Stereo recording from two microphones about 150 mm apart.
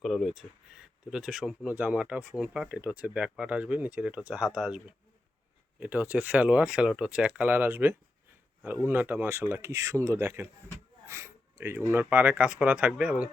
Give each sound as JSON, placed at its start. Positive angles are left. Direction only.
{"t": 0.0, "sound": "speech", "side_deg": 0}
{"t": 11.0, "sound": "a sound", "side_deg": -15}
{"t": 12.1, "sound": "speech", "side_deg": -10}